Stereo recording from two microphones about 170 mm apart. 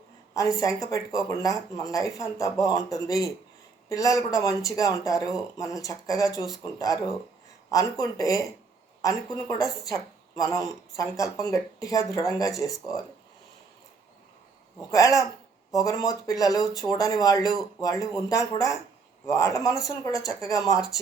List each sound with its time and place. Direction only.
0.3 s speech: 20° left (ahead or behind)
14.8 s speech: 20° left (ahead or behind)